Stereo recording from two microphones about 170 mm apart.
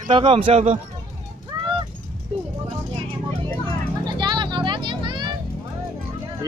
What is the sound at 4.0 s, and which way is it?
Music, 25° right (ahead or behind).